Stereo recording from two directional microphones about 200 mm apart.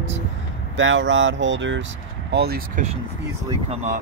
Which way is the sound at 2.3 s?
50° right (ahead or behind).